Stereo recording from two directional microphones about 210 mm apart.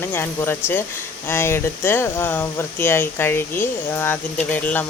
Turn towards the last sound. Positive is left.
turn(degrees=10)  # may be behind; listen again after turning